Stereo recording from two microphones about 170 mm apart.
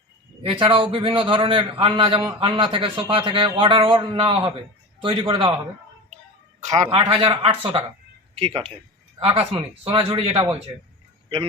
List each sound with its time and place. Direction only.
0.4 s a man's voice: 30° right (ahead or behind)
6.6 s a man's voice: 40° right (ahead or behind)